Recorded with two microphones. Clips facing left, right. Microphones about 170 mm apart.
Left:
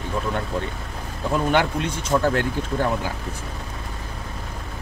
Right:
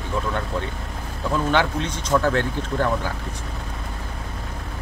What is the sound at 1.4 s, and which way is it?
Speech, 10° left (ahead or behind).